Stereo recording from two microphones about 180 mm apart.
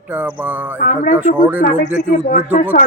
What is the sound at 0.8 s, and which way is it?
Speech, 50° left (ahead or behind).